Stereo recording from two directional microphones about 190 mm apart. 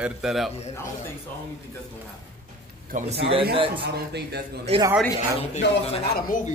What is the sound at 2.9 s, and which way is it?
Speech, 35° right (ahead or behind).